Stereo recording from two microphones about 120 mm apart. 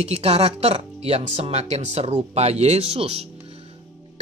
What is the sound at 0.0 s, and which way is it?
A man's voice, 60° right (ahead or behind).